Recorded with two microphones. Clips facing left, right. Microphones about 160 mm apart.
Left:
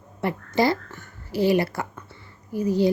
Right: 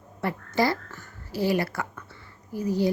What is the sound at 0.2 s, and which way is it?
A woman's voice, 20° left (ahead or behind).